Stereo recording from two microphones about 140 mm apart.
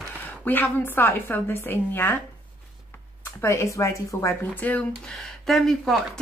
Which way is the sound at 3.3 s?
20° left (ahead or behind).